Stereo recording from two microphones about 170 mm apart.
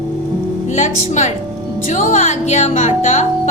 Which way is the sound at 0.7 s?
45° left (ahead or behind).